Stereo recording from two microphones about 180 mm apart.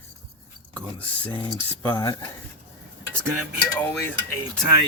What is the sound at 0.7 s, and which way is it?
Speech, 10° left (ahead or behind).